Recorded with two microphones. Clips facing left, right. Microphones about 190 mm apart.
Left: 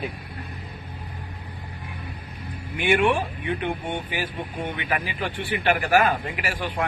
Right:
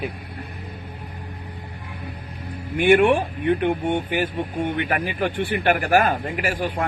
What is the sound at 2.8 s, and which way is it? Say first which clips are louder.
A man's voice: right 5 dB; 50° right (ahead or behind).